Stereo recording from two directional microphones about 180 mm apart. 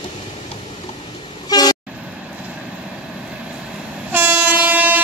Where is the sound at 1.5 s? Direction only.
20° left (ahead or behind).